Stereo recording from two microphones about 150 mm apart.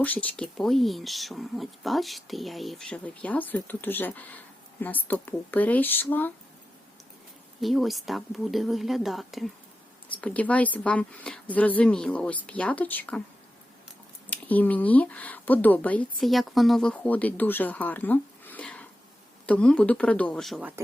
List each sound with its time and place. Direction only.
0.0 s speech: 10° left (ahead or behind)
7.6 s speech: centre (ahead or behind)
14.3 s speech: 10° left (ahead or behind)